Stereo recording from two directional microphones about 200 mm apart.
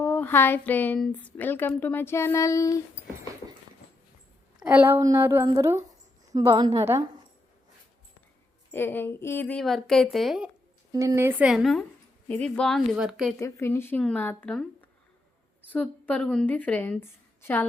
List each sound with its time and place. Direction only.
0.0 s a woman's voice: 10° left (ahead or behind)
4.6 s a woman's voice: 10° right (ahead or behind)
8.7 s a woman's voice: 10° left (ahead or behind)
10.9 s a woman's voice: 15° right (ahead or behind)
13.4 s a woman's voice: 10° left (ahead or behind)